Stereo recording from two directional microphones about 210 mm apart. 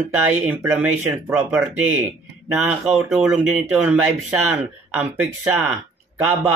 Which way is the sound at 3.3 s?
10° right (ahead or behind).